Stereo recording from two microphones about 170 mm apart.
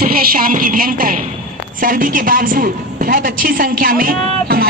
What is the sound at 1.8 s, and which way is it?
A woman's voice, 55° right (ahead or behind).